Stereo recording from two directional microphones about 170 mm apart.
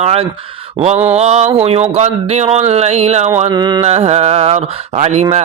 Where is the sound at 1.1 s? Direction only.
40° right (ahead or behind).